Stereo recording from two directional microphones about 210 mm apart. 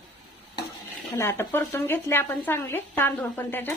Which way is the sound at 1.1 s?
10° left (ahead or behind).